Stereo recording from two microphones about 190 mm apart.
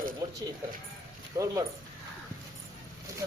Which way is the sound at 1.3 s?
15° right (ahead or behind).